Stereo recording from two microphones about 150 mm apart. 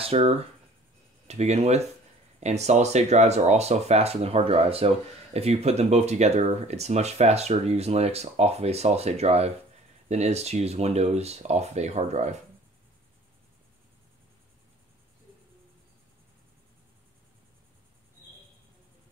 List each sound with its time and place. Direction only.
0.0 s speech: 40° right (ahead or behind)